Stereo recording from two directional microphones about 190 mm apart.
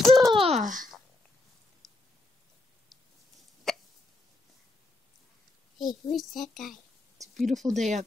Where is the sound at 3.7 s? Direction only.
Centre (ahead or behind).